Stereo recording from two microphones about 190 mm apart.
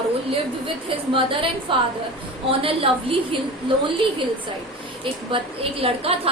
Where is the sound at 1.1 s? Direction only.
30° right (ahead or behind).